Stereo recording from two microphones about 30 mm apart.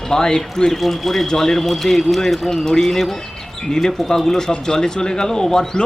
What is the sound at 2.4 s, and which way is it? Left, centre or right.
A man's voice, centre.